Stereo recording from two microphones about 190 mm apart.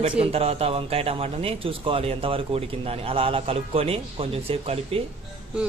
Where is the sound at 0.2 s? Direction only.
30° right (ahead or behind).